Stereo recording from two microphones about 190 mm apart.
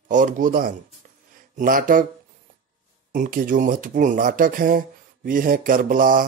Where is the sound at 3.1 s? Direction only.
45° right (ahead or behind).